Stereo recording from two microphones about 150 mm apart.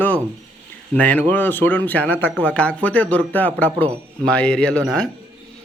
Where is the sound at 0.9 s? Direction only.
10° left (ahead or behind).